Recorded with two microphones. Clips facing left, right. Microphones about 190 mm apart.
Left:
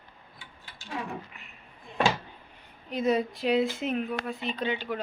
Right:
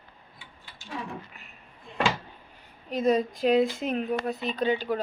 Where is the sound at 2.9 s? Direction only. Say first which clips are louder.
Right 2 dB; 40° right (ahead or behind).